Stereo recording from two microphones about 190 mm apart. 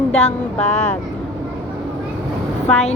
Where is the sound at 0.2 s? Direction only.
35° left (ahead or behind).